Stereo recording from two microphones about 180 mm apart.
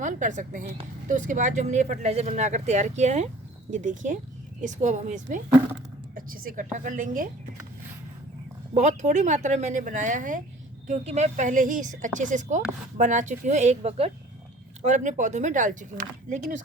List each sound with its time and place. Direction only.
0.0 s a woman's voice: 45° right (ahead or behind)
8.7 s a woman's voice: 40° right (ahead or behind)